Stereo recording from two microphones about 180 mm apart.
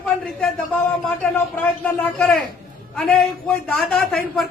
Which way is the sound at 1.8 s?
10° left (ahead or behind).